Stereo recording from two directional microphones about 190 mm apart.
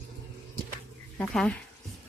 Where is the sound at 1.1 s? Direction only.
5° left (ahead or behind).